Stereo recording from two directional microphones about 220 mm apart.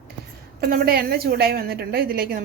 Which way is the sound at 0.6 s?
40° right (ahead or behind).